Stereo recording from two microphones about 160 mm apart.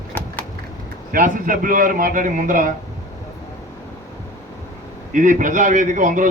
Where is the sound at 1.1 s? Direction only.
60° right (ahead or behind).